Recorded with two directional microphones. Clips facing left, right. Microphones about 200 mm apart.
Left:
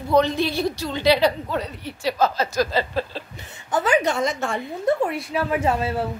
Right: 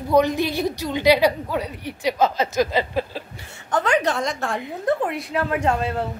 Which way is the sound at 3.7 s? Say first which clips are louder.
Even; 5° left (ahead or behind).